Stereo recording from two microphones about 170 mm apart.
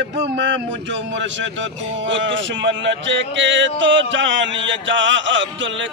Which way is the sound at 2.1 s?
90° right.